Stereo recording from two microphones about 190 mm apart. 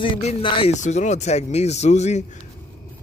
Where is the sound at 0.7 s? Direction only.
40° left (ahead or behind).